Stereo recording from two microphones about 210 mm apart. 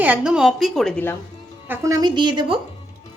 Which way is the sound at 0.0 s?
5° right (ahead or behind).